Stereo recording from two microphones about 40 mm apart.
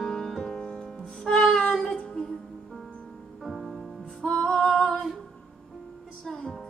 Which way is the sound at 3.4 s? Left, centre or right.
Centre.